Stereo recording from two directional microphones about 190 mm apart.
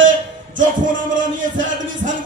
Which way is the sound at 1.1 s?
45° right (ahead or behind).